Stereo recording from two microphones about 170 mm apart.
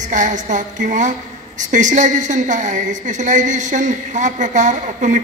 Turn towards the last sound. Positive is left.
turn(degrees=-45)  # may be behind; listen again after turning